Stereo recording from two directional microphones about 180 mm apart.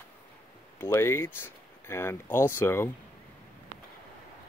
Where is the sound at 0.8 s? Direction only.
15° left (ahead or behind).